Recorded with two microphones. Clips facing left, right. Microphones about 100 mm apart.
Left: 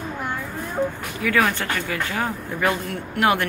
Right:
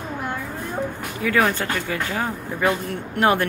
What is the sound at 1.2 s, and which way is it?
Speech, 20° right (ahead or behind).